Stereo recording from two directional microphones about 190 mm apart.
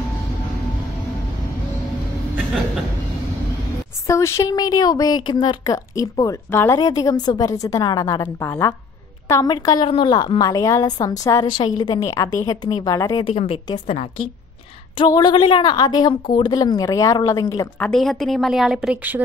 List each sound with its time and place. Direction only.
4.1 s speech: 15° left (ahead or behind)
13.3 s a woman's voice: 30° left (ahead or behind)
17.7 s a woman's voice: 5° left (ahead or behind)